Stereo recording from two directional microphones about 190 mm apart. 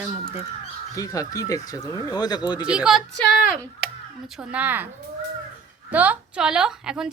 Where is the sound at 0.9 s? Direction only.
20° left (ahead or behind).